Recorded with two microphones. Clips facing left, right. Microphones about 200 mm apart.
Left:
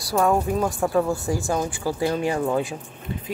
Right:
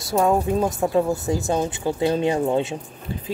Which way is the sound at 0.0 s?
20° right (ahead or behind).